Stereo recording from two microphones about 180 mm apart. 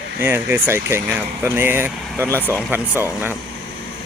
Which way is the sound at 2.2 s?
10° left (ahead or behind).